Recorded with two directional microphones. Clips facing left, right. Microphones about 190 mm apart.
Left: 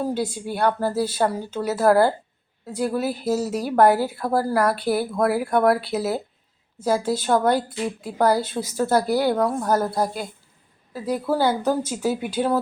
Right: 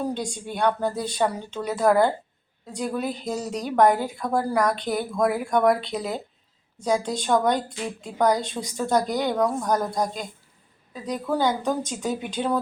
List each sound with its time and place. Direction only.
0.0 s a woman's voice: 5° left (ahead or behind)